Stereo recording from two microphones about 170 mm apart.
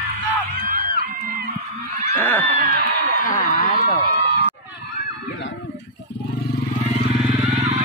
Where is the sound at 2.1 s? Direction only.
10° left (ahead or behind).